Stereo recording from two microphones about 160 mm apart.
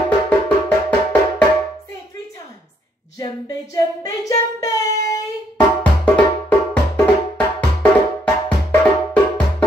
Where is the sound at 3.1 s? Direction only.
20° left (ahead or behind).